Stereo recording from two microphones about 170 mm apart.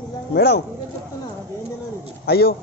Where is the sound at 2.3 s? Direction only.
65° left (ahead or behind).